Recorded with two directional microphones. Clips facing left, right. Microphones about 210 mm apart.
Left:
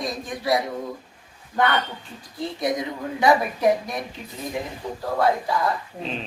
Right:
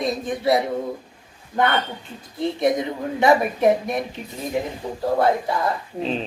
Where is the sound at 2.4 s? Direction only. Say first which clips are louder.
Right 5 dB; 25° right (ahead or behind).